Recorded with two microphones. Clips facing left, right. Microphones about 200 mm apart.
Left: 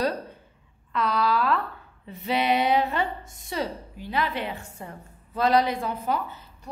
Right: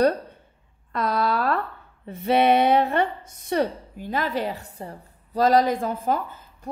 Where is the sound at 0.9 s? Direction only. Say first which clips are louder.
Right 1 dB; 50° right (ahead or behind).